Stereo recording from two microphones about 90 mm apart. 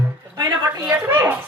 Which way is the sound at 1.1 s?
20° right (ahead or behind).